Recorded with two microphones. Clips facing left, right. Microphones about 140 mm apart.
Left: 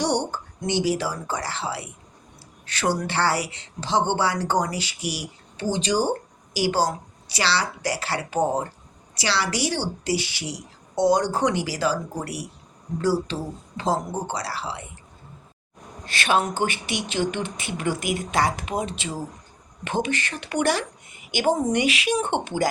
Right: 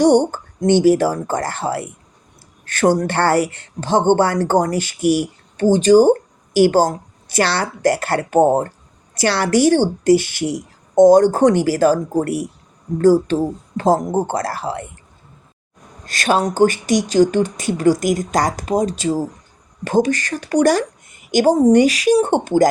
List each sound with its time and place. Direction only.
0.0 s speech: 45° right (ahead or behind)
16.0 s speech: 40° right (ahead or behind)